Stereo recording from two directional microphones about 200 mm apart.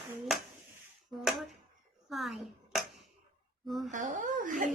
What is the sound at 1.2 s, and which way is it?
A child's voice, centre (ahead or behind).